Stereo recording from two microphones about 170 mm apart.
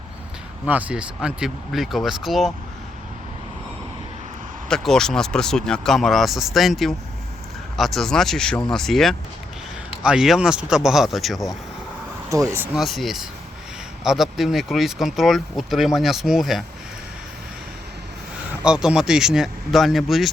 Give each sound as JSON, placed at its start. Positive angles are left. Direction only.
{"t": 0.6, "sound": "speech", "side_deg": -10}
{"t": 4.7, "sound": "speech", "side_deg": 5}
{"t": 12.3, "sound": "speech", "side_deg": -20}
{"t": 12.7, "sound": "speech", "side_deg": 0}
{"t": 18.6, "sound": "speech", "side_deg": -5}